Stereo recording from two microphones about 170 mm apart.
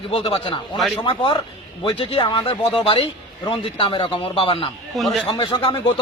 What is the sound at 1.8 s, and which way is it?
A man's voice, 30° left (ahead or behind).